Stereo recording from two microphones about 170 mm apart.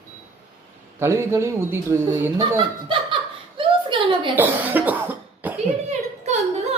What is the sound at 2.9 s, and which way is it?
Chuckle, 30° right (ahead or behind).